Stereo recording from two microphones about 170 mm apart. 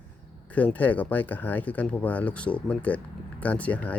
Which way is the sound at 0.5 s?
10° left (ahead or behind).